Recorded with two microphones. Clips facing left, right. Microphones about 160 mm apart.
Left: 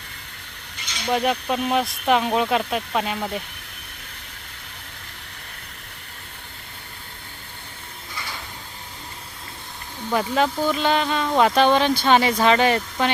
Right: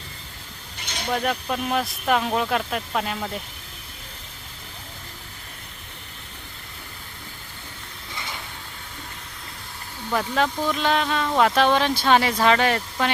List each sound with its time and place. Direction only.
0.8 s a sound: 60° right (ahead or behind)
1.1 s speech: 5° left (ahead or behind)
8.1 s sliding door: 20° right (ahead or behind)
10.1 s speech: 5° left (ahead or behind)